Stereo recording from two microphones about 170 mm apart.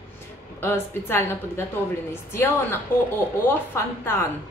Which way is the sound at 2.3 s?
15° left (ahead or behind).